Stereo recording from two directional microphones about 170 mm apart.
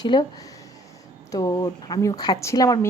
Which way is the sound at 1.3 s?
20° left (ahead or behind).